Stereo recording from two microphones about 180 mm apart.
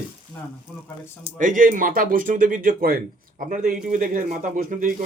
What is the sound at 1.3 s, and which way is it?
Speech, 45° right (ahead or behind).